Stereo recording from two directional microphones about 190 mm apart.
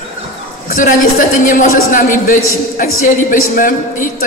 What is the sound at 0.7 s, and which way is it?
A man's voice, 45° left (ahead or behind).